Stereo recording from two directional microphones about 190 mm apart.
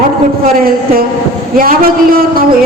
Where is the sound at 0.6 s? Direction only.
50° right (ahead or behind).